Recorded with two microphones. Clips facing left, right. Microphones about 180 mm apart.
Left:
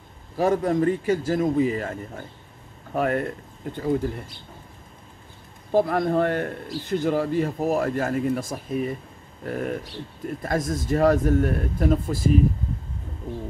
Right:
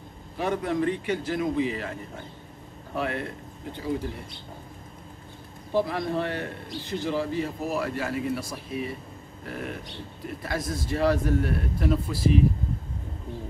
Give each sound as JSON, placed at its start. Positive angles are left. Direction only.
{"t": 0.4, "sound": "a man's voice", "side_deg": 45}
{"t": 5.7, "sound": "a man's voice", "side_deg": 50}